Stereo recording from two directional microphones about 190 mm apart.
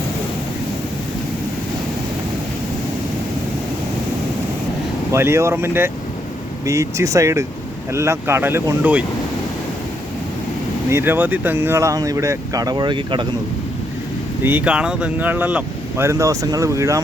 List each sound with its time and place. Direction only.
5.1 s speech: 15° right (ahead or behind)
10.8 s speech: 10° right (ahead or behind)
14.4 s speech: 10° right (ahead or behind)